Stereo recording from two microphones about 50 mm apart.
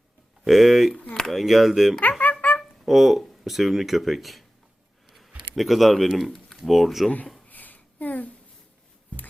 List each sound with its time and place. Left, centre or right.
0.4 s speech: centre
2.0 s music: left
2.8 s speech: centre
5.0 s a sound: centre
5.5 s speech: centre
7.5 s a sound: left